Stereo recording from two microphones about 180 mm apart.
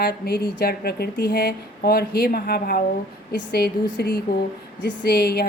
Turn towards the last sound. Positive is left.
turn(degrees=60)  # may be behind; listen again after turning